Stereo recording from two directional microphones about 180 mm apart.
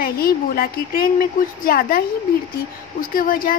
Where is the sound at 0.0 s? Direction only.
55° left (ahead or behind).